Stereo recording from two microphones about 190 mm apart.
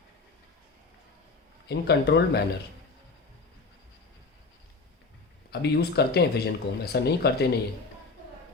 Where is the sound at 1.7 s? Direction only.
60° left (ahead or behind).